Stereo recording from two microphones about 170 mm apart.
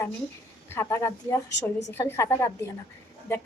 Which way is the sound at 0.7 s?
15° left (ahead or behind).